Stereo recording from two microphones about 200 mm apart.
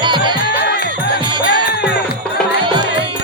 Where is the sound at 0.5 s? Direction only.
60° left (ahead or behind).